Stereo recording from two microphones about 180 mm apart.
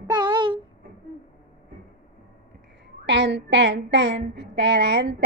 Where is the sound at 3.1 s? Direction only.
75° right (ahead or behind).